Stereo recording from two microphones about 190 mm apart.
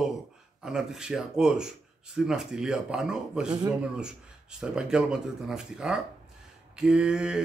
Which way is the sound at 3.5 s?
20° right (ahead or behind).